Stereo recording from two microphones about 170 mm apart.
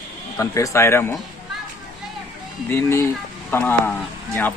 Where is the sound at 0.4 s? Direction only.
15° left (ahead or behind).